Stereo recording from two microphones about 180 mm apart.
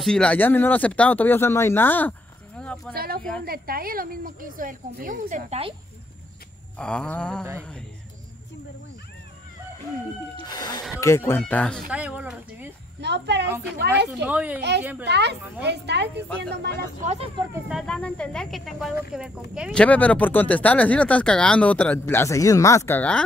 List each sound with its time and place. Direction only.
0.0 s speech: 5° left (ahead or behind)
2.6 s a sound: 5° left (ahead or behind)
2.9 s speech: 55° right (ahead or behind)
6.8 s speech: 5° left (ahead or behind)
10.5 s speech: 20° left (ahead or behind)
11.9 s speech: 5° right (ahead or behind)
13.0 s speech: 70° right (ahead or behind)
13.8 s speech: 10° right (ahead or behind)
15.0 s speech: 70° right (ahead or behind)
17.0 s speech: 40° right (ahead or behind)
17.6 s speech: centre (ahead or behind)
19.7 s speech: 5° left (ahead or behind)